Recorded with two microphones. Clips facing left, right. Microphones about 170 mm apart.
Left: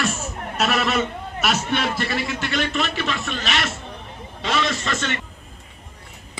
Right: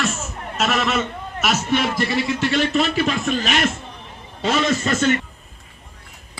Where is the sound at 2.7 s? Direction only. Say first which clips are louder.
Right 5 dB; 40° right (ahead or behind).